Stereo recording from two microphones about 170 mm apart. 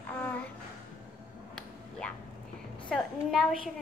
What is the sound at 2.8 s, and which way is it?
Speech, centre (ahead or behind).